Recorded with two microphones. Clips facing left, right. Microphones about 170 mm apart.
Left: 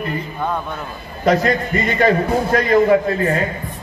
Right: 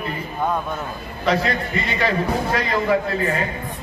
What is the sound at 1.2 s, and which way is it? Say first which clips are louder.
Speech: left 5 dB; 45° left (ahead or behind).